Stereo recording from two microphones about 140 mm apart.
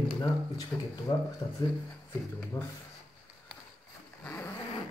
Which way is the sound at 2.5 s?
20° left (ahead or behind).